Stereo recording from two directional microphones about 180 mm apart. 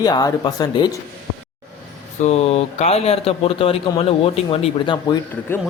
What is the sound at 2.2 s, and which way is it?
A man's voice, 35° left (ahead or behind).